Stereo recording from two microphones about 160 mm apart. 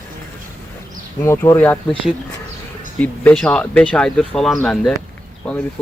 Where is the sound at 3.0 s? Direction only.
5° left (ahead or behind).